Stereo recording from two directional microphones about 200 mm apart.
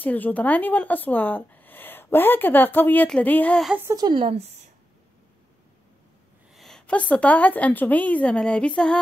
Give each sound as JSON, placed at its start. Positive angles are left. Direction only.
{"t": 0.0, "sound": "speech", "side_deg": 10}
{"t": 3.8, "sound": "speech", "side_deg": -20}
{"t": 6.5, "sound": "speech", "side_deg": 0}